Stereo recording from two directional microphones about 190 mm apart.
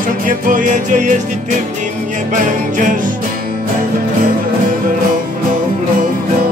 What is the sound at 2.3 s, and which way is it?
Music, 45° right (ahead or behind).